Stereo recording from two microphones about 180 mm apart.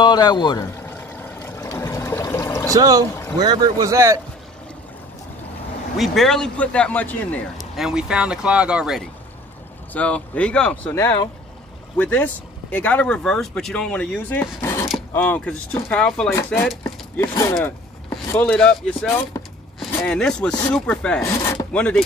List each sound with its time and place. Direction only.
0.0 s vehicle: 25° left (ahead or behind)
2.7 s speech: 20° right (ahead or behind)
3.1 s boat: 15° left (ahead or behind)
3.3 s speech: 20° right (ahead or behind)
5.9 s speech: centre (ahead or behind)
7.7 s speech: 5° right (ahead or behind)
16.3 s speech: 15° left (ahead or behind)
21.3 s speech: 20° left (ahead or behind)
21.7 s speech: 5° left (ahead or behind)